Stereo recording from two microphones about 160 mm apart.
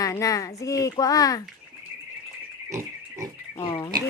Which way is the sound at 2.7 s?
20° right (ahead or behind).